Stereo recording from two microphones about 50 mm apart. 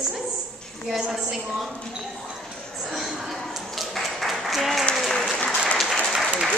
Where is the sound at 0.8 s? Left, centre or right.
Centre.